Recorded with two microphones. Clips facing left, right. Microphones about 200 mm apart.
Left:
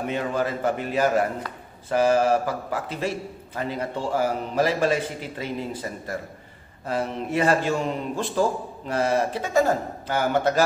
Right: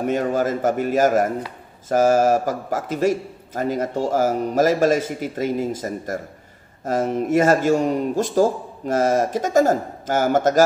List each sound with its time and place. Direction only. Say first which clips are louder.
0.0 s a man's voice: right 5 dB; 45° right (ahead or behind)